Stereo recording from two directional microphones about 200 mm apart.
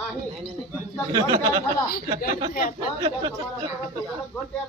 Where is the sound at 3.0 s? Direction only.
25° right (ahead or behind).